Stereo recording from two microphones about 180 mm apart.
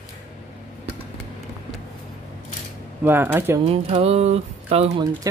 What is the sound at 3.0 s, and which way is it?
Speech, 10° right (ahead or behind).